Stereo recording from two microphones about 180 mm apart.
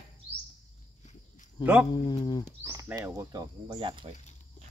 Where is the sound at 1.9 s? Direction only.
25° left (ahead or behind).